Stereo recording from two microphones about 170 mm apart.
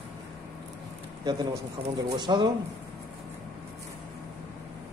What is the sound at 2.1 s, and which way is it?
Speech, 25° right (ahead or behind).